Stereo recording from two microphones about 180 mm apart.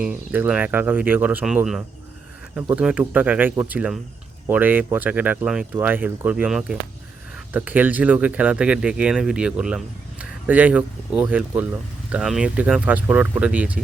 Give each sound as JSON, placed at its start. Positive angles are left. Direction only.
{"t": 0.0, "sound": "speech", "side_deg": -5}